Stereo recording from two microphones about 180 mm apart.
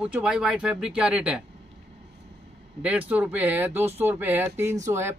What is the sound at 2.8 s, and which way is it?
Speech, 10° right (ahead or behind).